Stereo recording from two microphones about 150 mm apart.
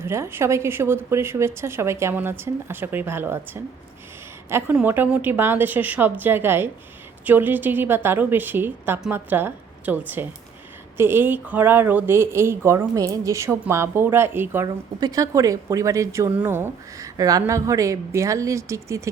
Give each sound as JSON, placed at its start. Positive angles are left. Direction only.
{"t": 0.0, "sound": "a woman's voice", "side_deg": -15}